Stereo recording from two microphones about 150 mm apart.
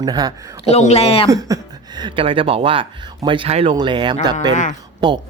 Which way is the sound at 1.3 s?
25° right (ahead or behind).